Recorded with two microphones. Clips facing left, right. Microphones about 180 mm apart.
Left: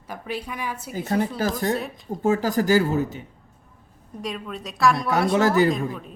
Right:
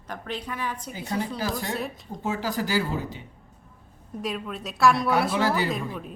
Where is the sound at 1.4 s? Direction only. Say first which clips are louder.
Left 5 dB; 45° left (ahead or behind).